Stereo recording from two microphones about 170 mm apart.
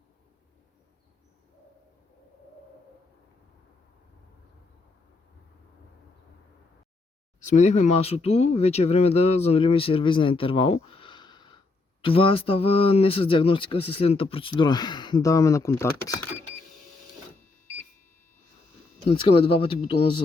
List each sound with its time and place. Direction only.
7.4 s speech: 45° left (ahead or behind); by 16.1 s 15° left (ahead or behind)
19.0 s speech: 35° left (ahead or behind)